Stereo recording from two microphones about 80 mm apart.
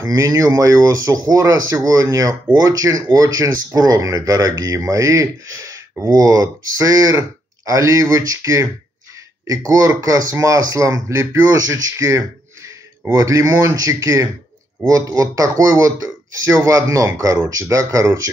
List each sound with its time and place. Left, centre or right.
0.0 s speech: right